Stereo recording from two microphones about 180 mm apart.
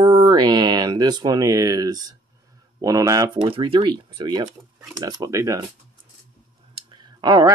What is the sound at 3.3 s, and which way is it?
Speech, 30° right (ahead or behind).